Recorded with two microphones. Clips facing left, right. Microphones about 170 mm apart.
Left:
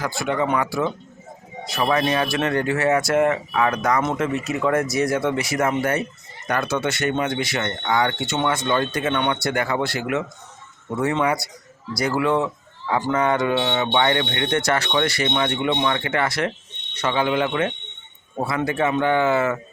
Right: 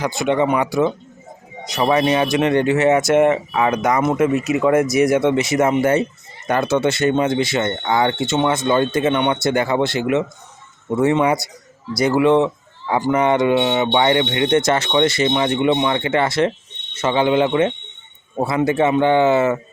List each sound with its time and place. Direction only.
0.0 s speech: 20° right (ahead or behind)